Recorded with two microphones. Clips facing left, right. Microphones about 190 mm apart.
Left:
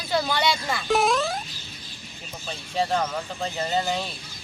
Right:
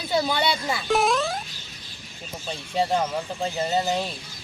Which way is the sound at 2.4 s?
20° right (ahead or behind).